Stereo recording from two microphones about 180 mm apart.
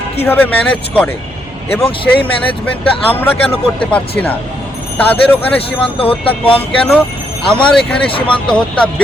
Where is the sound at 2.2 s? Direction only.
10° left (ahead or behind).